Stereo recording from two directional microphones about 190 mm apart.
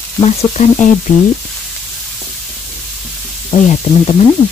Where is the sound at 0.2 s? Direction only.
35° left (ahead or behind).